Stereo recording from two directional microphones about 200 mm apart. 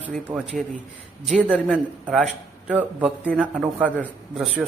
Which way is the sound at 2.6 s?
5° right (ahead or behind).